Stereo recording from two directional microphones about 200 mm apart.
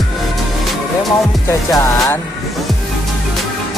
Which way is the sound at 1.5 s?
15° left (ahead or behind).